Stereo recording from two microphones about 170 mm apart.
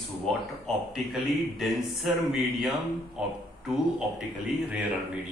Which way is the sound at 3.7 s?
5° right (ahead or behind).